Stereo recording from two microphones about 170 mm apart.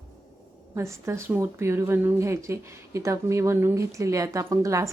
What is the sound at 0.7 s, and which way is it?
A woman's voice, 15° right (ahead or behind).